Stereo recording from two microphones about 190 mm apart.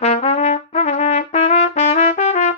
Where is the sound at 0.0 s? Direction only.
35° left (ahead or behind).